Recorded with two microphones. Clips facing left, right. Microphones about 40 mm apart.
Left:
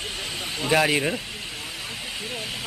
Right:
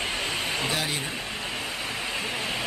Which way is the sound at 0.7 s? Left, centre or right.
Left.